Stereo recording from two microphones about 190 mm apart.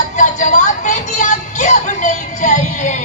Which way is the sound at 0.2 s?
40° left (ahead or behind).